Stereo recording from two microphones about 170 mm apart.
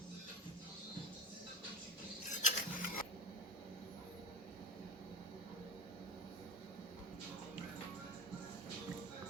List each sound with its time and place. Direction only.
2.3 s mechanisms: 50° left (ahead or behind)